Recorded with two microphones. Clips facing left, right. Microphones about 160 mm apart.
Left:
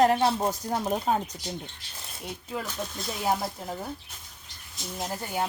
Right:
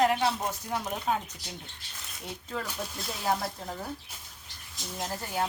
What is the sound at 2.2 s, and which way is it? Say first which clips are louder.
Speech: left 2 dB; 10° left (ahead or behind).